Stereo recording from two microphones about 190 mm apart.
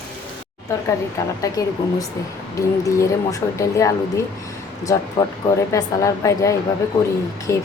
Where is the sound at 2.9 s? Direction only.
15° left (ahead or behind).